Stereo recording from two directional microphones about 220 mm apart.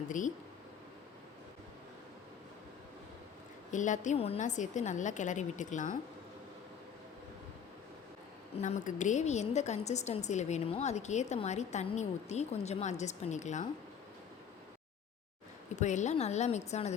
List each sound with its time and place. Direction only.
0.1 s a woman's voice: 35° left (ahead or behind)
3.7 s a woman's voice: 35° left (ahead or behind)
8.5 s a woman's voice: 30° left (ahead or behind)
15.7 s a woman's voice: 35° left (ahead or behind)